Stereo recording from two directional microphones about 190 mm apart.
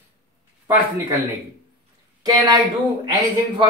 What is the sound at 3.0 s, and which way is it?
Speech, 20° right (ahead or behind).